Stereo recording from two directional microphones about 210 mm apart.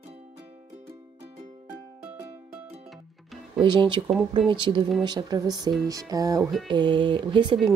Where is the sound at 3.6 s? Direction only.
20° right (ahead or behind).